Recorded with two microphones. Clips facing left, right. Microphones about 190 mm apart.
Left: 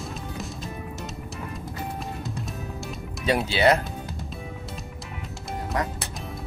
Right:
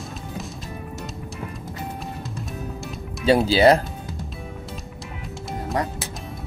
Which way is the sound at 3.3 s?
30° right (ahead or behind).